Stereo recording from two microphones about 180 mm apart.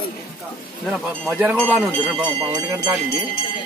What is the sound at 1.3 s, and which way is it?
Speech, 10° right (ahead or behind).